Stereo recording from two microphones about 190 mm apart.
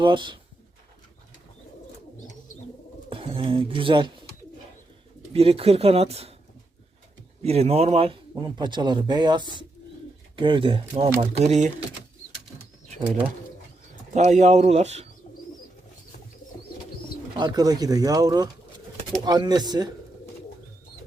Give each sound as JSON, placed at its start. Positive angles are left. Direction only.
{"t": 0.0, "sound": "speech", "side_deg": -25}
{"t": 3.1, "sound": "speech", "side_deg": -30}
{"t": 5.3, "sound": "speech", "side_deg": -30}
{"t": 7.4, "sound": "speech", "side_deg": -30}
{"t": 14.1, "sound": "speech", "side_deg": -35}
{"t": 17.3, "sound": "speech", "side_deg": -25}